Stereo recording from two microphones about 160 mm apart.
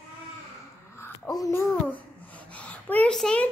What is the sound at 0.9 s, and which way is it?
Speech, 20° left (ahead or behind).